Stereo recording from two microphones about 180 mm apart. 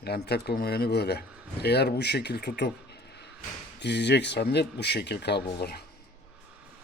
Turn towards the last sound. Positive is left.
turn(degrees=60)  # may be behind; listen again after turning